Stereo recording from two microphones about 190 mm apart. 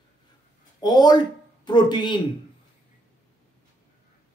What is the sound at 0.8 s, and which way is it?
Speech, 20° left (ahead or behind).